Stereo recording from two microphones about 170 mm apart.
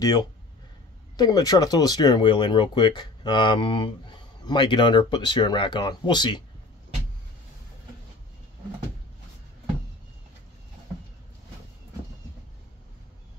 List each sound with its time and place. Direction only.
0.0 s speech: 20° left (ahead or behind)